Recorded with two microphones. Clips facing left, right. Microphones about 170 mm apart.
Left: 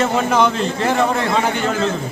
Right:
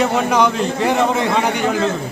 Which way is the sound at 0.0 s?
15° right (ahead or behind).